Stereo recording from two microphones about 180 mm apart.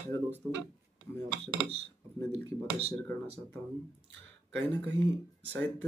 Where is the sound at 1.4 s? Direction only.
30° right (ahead or behind).